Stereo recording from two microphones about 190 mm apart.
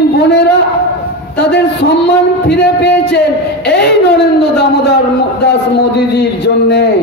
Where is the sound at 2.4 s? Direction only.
65° left (ahead or behind).